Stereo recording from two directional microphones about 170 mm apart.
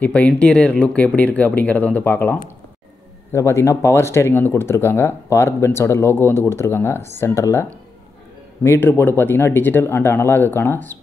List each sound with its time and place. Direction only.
0.0 s speech: 10° left (ahead or behind)
8.6 s speech: 15° left (ahead or behind)